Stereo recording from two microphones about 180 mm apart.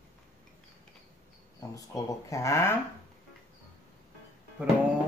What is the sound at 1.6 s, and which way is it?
Speech, 20° left (ahead or behind).